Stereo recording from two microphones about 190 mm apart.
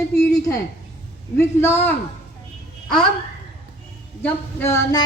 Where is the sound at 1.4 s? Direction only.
10° left (ahead or behind).